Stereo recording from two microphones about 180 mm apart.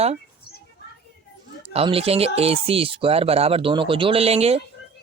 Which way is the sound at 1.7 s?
30° right (ahead or behind).